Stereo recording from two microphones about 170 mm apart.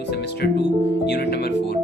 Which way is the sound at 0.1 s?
80° left.